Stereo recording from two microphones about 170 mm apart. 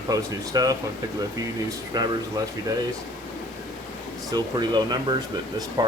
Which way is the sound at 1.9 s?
25° right (ahead or behind).